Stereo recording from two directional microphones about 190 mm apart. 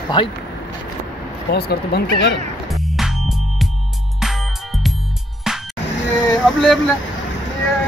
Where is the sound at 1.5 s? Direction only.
55° left (ahead or behind).